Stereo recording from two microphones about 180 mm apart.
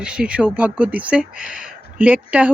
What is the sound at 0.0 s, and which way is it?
Speech, 5° right (ahead or behind).